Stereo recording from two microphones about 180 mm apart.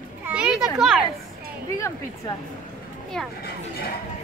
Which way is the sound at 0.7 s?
Centre (ahead or behind).